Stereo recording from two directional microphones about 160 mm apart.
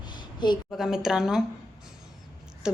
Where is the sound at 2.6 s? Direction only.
5° right (ahead or behind).